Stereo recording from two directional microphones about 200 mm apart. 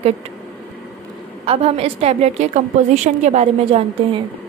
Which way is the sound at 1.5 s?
30° right (ahead or behind).